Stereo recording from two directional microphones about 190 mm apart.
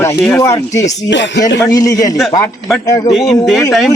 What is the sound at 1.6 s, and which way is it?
A man's voice, 20° left (ahead or behind).